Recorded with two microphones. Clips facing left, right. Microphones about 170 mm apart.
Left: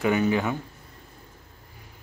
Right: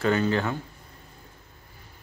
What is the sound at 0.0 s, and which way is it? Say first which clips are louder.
Speech: left 1 dB; 15° left (ahead or behind).